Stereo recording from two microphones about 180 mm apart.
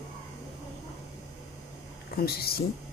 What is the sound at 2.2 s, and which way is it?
Speech, 60° left (ahead or behind).